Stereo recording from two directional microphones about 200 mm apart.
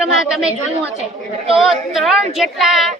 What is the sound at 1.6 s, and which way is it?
Speech, centre (ahead or behind).